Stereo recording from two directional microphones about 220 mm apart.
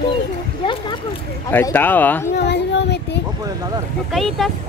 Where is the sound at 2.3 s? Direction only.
50° left (ahead or behind).